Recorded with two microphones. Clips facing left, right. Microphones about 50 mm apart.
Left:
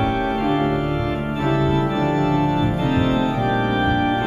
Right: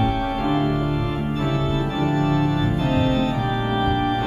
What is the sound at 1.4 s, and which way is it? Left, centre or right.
Organ, centre.